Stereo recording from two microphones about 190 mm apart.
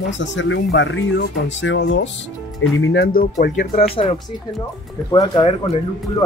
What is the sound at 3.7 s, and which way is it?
Speech, 30° left (ahead or behind).